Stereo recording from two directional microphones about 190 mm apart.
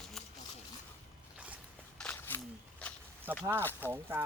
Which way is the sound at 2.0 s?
10° left (ahead or behind).